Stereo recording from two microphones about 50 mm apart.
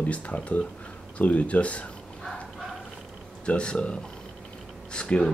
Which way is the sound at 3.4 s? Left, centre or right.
Left.